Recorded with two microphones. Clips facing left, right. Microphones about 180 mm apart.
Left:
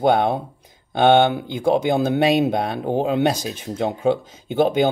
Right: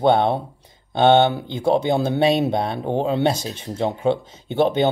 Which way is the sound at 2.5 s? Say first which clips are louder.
Left 1 dB; 25° right (ahead or behind).